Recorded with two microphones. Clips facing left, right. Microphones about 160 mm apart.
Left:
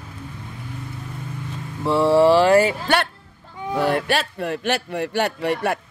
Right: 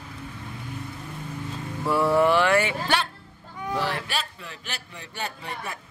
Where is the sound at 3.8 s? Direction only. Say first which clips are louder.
Left 9 dB; 60° left (ahead or behind); by 5.8 s 75° left (ahead or behind).